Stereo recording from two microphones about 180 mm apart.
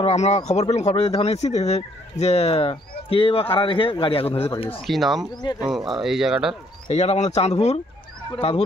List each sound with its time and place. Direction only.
0.0 s speech: 40° left (ahead or behind)
4.8 s speech: centre (ahead or behind)
5.3 s speech: 25° left (ahead or behind)
5.6 s speech: centre (ahead or behind)
6.9 s speech: 35° left (ahead or behind)